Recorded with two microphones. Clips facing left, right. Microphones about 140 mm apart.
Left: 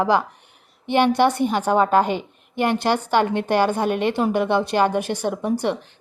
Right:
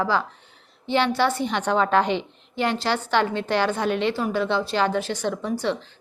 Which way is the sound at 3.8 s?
50° left (ahead or behind).